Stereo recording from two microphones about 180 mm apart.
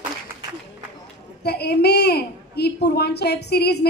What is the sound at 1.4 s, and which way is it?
A child's voice, 65° left (ahead or behind).